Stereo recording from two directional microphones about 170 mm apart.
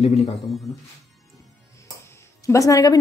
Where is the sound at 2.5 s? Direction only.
20° left (ahead or behind).